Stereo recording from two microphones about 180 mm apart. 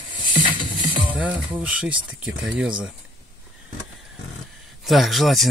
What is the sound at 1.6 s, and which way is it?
Speech, 5° right (ahead or behind).